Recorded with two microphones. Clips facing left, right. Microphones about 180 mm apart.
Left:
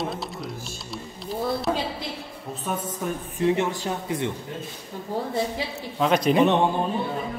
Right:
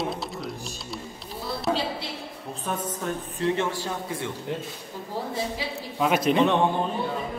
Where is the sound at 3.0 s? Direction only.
15° left (ahead or behind).